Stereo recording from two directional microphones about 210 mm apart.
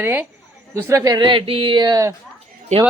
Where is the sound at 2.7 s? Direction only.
30° right (ahead or behind).